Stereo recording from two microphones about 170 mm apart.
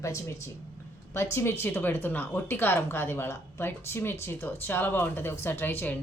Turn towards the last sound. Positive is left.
turn(degrees=10)  # may be behind; listen again after turning